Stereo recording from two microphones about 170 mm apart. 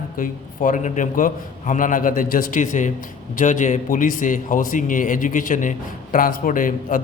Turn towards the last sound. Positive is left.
turn(degrees=55)  # may be behind; listen again after turning